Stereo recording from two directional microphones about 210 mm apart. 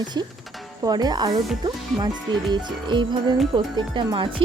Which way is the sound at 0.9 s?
20° right (ahead or behind).